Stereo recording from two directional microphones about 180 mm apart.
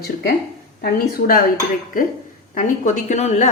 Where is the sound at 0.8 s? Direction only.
55° left (ahead or behind).